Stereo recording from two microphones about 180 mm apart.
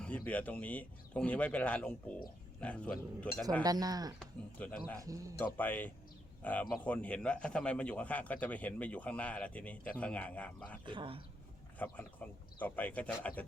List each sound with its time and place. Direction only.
0.0 s a man's voice: 10° left (ahead or behind)
3.6 s speech: 20° right (ahead or behind)
4.2 s a man's voice: 5° left (ahead or behind)
4.9 s speech: 20° right (ahead or behind)
5.5 s a man's voice: 10° left (ahead or behind)
10.8 s speech: 30° right (ahead or behind)
11.8 s a man's voice: 10° left (ahead or behind)